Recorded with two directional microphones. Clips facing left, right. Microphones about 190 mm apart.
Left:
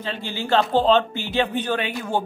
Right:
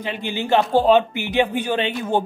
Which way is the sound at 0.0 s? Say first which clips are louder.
Right 3 dB; 15° right (ahead or behind).